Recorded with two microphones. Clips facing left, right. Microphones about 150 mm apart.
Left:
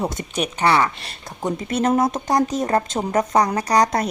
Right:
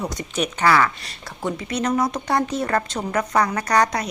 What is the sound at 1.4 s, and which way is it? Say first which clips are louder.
Speech: left 3 dB; 50° left (ahead or behind).